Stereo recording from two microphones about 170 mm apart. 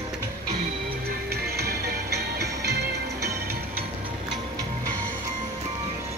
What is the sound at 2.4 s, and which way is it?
Music, 70° right (ahead or behind).